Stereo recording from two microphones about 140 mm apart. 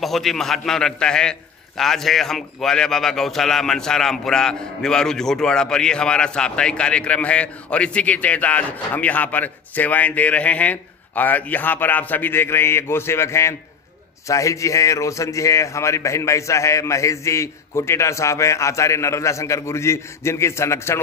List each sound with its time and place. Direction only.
0.0 s a man's voice: centre (ahead or behind); by 21.0 s 20° left (ahead or behind)